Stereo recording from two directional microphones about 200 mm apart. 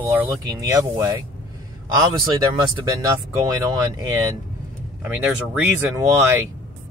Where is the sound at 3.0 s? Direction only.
15° right (ahead or behind).